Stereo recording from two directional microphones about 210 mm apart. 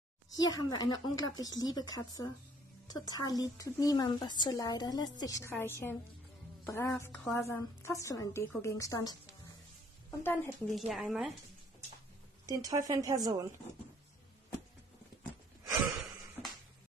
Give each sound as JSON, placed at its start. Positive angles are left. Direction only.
{"t": 0.4, "sound": "a woman's voice", "side_deg": 20}
{"t": 10.2, "sound": "a woman's voice", "side_deg": 10}
{"t": 12.4, "sound": "speech", "side_deg": -15}